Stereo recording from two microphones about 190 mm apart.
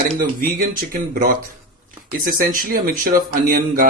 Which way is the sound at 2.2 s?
45° right (ahead or behind).